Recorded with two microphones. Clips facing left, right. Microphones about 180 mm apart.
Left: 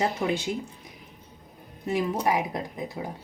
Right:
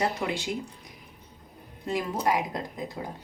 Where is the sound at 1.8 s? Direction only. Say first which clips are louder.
Left 2 dB; 15° left (ahead or behind).